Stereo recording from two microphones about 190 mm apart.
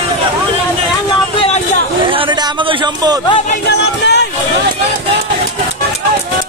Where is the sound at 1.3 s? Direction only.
35° left (ahead or behind).